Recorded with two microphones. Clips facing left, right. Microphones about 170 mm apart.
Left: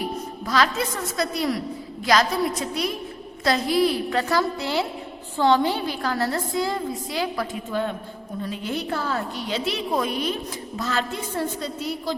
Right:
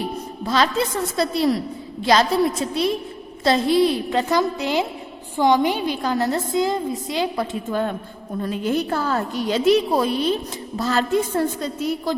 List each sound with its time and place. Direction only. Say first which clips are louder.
0.4 s a woman's voice: right 3 dB; 25° right (ahead or behind)
8.4 s a woman's voice: right 6 dB; 45° right (ahead or behind)
11.3 s a woman's voice: right 5 dB; 50° right (ahead or behind)